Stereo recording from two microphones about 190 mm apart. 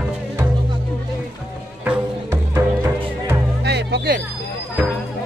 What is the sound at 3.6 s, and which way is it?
Music, 60° right (ahead or behind).